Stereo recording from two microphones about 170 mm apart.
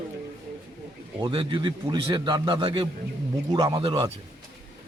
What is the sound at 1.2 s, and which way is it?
Speech, 30° right (ahead or behind).